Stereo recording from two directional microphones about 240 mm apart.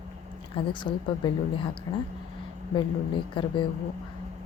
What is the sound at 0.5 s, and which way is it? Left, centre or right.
A woman's voice, centre.